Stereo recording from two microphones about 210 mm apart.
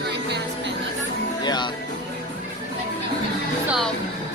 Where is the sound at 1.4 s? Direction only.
20° left (ahead or behind).